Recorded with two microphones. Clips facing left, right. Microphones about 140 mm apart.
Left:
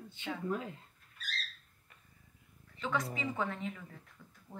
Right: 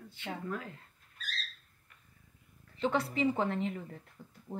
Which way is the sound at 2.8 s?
30° right (ahead or behind).